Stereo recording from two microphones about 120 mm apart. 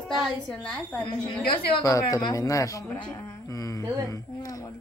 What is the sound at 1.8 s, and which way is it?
A man's voice, 30° left (ahead or behind).